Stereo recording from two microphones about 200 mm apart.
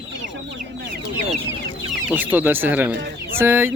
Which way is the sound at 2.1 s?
10° right (ahead or behind).